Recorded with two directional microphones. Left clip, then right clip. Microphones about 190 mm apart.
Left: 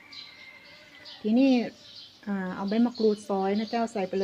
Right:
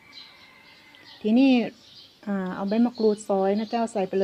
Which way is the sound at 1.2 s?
40° right (ahead or behind).